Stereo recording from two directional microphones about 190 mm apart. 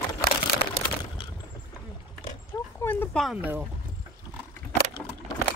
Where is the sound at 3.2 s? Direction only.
10° right (ahead or behind).